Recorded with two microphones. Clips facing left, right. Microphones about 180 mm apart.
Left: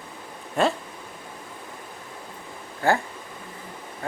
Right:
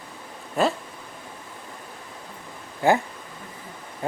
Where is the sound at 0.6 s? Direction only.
Centre (ahead or behind).